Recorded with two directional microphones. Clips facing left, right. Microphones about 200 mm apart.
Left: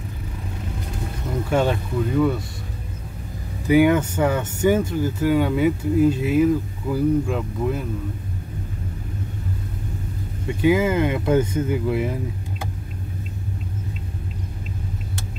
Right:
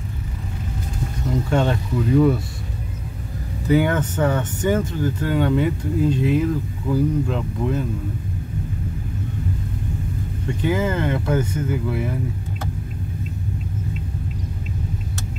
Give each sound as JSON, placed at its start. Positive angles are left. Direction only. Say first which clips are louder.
{"t": 1.5, "sound": "speech", "louder": "left 1 dB", "side_deg": 10}
{"t": 3.6, "sound": "speech", "louder": "left 3 dB", "side_deg": 10}
{"t": 10.6, "sound": "speech", "louder": "left 4 dB", "side_deg": 10}